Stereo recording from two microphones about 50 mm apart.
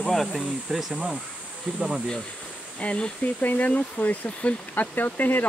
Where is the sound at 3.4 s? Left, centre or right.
Left.